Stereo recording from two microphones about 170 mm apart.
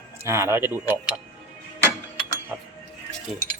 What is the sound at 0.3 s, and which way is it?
Speech, 15° right (ahead or behind).